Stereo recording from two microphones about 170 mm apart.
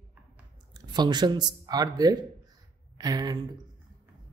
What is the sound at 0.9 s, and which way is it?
Speech, 25° right (ahead or behind).